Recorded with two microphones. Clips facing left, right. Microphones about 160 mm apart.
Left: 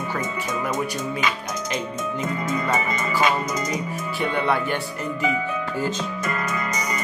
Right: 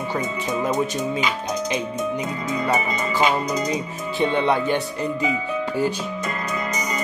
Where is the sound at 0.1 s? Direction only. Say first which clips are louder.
Right 2 dB; 20° right (ahead or behind).